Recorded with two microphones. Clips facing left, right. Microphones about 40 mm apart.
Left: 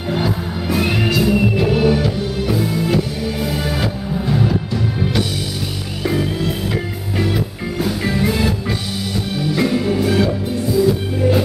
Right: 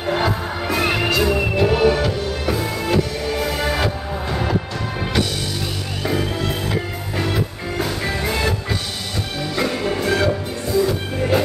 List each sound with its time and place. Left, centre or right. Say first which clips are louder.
0.0 s music: even; centre
7.2 s music: left 2 dB; centre